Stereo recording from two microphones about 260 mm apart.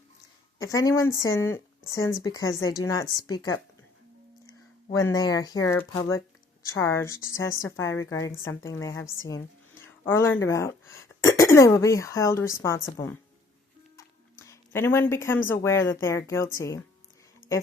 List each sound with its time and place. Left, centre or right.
0.6 s speech: centre
13.9 s music: centre
15.4 s speech: centre